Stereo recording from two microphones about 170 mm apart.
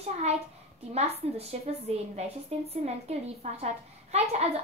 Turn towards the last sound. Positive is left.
turn(degrees=-40)  # may be behind; listen again after turning